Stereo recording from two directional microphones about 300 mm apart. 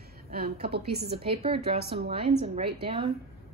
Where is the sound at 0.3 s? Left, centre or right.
Right.